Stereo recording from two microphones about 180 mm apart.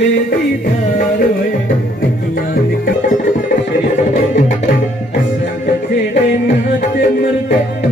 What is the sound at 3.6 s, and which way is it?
Tabla, 45° left (ahead or behind).